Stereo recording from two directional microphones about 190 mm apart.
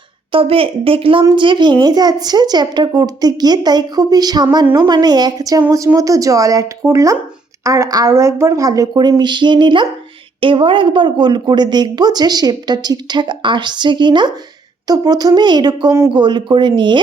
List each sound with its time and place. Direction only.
0.3 s speech: 30° right (ahead or behind)